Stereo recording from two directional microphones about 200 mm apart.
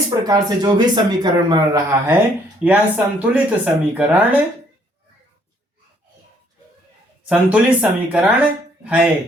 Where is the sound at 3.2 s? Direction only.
5° right (ahead or behind).